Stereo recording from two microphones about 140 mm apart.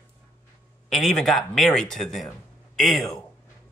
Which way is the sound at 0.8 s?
Centre (ahead or behind).